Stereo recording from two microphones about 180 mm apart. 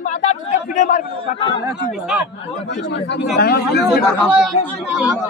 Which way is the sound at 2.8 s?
80° left.